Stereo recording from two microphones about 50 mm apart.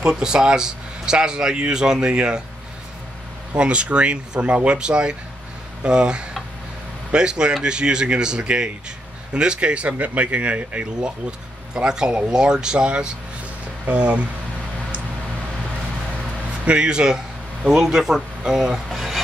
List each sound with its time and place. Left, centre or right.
0.2 s speech: centre
3.5 s speech: right
16.6 s speech: centre
18.9 s speech: centre